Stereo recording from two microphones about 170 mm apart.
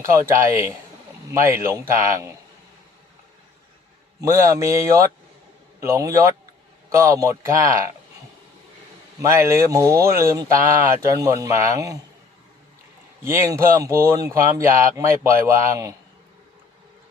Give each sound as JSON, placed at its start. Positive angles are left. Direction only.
{"t": 0.0, "sound": "speech", "side_deg": -15}
{"t": 4.2, "sound": "speech", "side_deg": -20}
{"t": 9.2, "sound": "speech", "side_deg": -15}
{"t": 13.2, "sound": "speech", "side_deg": -15}